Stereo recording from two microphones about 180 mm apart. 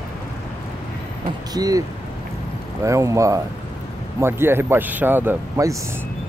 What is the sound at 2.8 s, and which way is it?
A man's voice, 15° right (ahead or behind).